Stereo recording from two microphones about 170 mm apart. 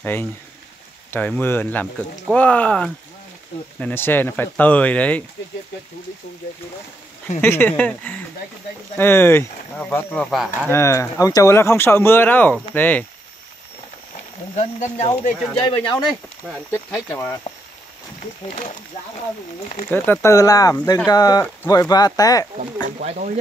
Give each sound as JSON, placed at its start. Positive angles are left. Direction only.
{"t": 0.0, "sound": "speech", "side_deg": 10}
{"t": 7.4, "sound": "speech", "side_deg": 10}
{"t": 10.7, "sound": "speech", "side_deg": 15}
{"t": 14.5, "sound": "speech", "side_deg": 40}
{"t": 15.6, "sound": "speech", "side_deg": 30}
{"t": 17.1, "sound": "speech", "side_deg": 15}
{"t": 19.9, "sound": "speech", "side_deg": 15}
{"t": 22.8, "sound": "speech", "side_deg": -50}